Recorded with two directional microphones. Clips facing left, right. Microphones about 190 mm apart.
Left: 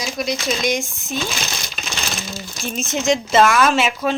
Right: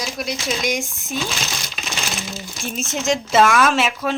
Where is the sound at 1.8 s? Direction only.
5° right (ahead or behind).